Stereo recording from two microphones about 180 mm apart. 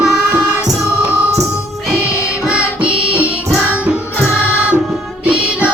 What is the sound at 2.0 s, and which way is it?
Music, 15° left (ahead or behind).